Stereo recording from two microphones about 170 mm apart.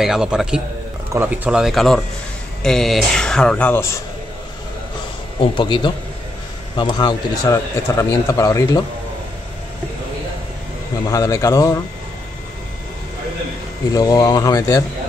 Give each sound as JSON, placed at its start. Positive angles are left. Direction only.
{"t": 0.0, "sound": "speech", "side_deg": -5}
{"t": 5.4, "sound": "a man's voice", "side_deg": 30}
{"t": 11.1, "sound": "a man's voice", "side_deg": 20}
{"t": 13.9, "sound": "a man's voice", "side_deg": 20}